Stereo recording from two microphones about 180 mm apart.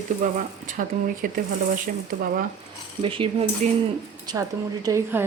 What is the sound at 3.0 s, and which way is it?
Speech, 30° right (ahead or behind).